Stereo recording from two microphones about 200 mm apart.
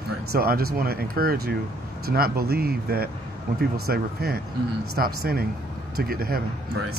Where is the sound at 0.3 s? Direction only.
50° right (ahead or behind).